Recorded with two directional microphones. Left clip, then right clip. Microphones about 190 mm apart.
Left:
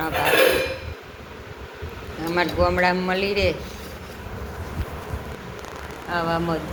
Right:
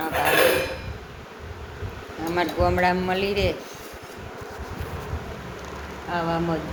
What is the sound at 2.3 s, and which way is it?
A man's voice, 20° right (ahead or behind).